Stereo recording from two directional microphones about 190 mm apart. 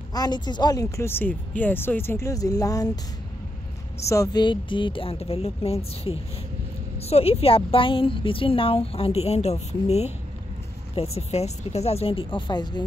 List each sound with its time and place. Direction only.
0.1 s speech: 20° left (ahead or behind)
4.0 s a woman's voice: 15° left (ahead or behind)